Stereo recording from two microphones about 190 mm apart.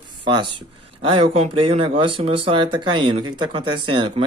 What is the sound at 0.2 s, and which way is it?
Speech, 25° right (ahead or behind).